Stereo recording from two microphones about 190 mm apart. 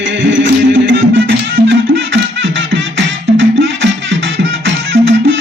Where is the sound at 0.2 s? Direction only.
75° right (ahead or behind).